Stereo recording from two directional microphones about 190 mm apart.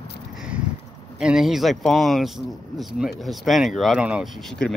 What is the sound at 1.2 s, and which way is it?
Speech, 5° right (ahead or behind).